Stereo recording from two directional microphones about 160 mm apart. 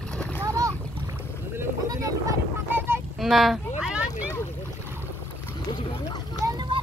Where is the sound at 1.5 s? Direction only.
15° right (ahead or behind).